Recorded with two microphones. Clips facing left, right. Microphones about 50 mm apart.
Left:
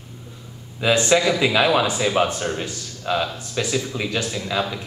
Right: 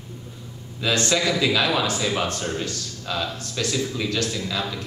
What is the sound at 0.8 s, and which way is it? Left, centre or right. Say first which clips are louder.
Speech: left 5 dB; centre.